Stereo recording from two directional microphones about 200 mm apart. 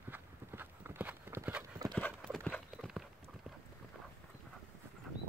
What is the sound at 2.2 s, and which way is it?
Clip-clop, 5° left (ahead or behind).